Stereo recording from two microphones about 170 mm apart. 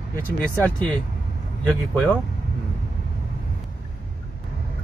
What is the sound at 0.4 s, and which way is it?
Speech, 5° left (ahead or behind).